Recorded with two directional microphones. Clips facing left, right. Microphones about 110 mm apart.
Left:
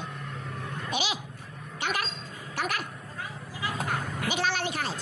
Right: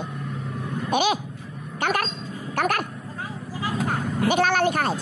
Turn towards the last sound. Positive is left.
turn(degrees=-50)  # may be behind; listen again after turning